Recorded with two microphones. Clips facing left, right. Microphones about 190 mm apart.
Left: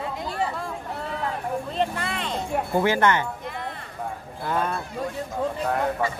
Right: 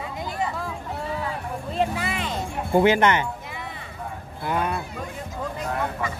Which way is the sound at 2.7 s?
20° right (ahead or behind).